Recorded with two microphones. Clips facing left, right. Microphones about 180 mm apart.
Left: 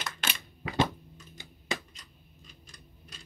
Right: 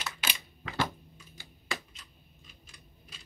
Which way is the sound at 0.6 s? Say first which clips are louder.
Left 5 dB; 10° left (ahead or behind).